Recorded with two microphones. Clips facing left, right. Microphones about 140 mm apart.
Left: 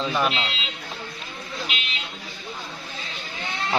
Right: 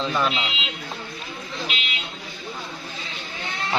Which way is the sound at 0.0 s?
10° left (ahead or behind).